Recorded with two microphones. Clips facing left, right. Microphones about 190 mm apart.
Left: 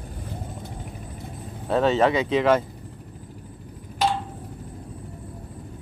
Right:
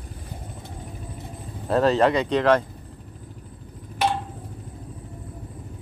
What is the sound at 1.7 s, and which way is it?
Speech, centre (ahead or behind).